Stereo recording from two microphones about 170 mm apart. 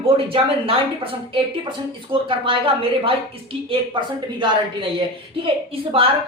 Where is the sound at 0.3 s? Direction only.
35° right (ahead or behind).